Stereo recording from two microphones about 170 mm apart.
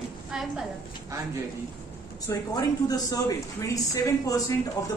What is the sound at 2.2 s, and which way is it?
Speech, 20° left (ahead or behind).